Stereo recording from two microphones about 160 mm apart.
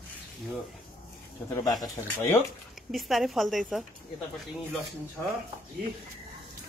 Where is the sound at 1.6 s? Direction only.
25° left (ahead or behind).